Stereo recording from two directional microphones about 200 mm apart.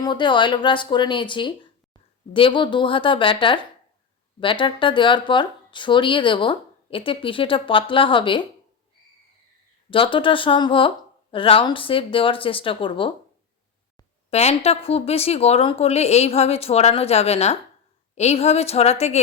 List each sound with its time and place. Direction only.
0.0 s speech: 25° left (ahead or behind)
9.9 s speech: 25° left (ahead or behind)
14.3 s speech: 30° left (ahead or behind)